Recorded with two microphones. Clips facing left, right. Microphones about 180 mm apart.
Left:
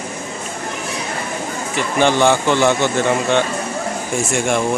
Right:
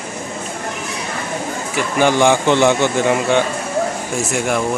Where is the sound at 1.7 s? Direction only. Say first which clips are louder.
Even; 10° right (ahead or behind).